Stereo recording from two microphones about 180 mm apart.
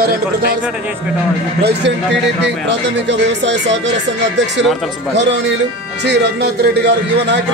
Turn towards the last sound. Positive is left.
turn(degrees=-70)  # may be behind; listen again after turning